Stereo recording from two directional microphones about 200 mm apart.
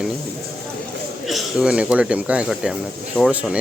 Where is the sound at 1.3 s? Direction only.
5° right (ahead or behind).